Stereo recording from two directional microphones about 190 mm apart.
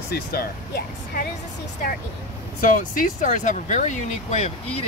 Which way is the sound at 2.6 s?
45° left (ahead or behind).